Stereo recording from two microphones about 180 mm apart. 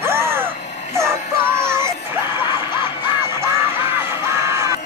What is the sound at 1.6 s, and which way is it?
Music, 15° right (ahead or behind).